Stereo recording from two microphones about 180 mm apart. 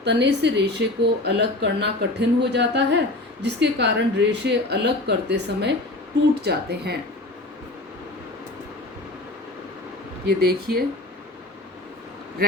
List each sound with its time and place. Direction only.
0.0 s speech: 70° right (ahead or behind)
10.2 s speech: 60° right (ahead or behind)